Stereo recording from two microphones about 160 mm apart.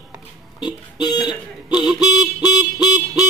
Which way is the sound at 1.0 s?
25° left (ahead or behind).